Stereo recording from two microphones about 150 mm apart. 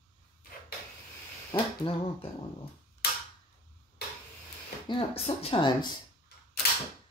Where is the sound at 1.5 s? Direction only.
35° left (ahead or behind).